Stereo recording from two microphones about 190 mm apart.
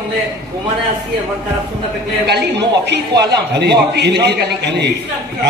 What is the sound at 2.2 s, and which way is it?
A man's voice, 60° right (ahead or behind).